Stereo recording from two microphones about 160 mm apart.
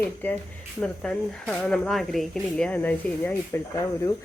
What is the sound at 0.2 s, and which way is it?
Speech, 10° left (ahead or behind).